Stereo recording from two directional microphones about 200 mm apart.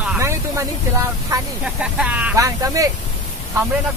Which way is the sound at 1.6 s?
5° right (ahead or behind).